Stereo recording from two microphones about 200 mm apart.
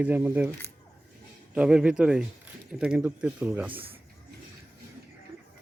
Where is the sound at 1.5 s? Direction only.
5° right (ahead or behind).